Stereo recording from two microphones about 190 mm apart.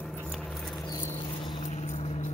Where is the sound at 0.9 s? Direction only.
20° left (ahead or behind).